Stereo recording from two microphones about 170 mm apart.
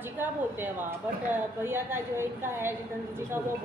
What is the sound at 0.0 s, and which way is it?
A woman's voice, 10° right (ahead or behind).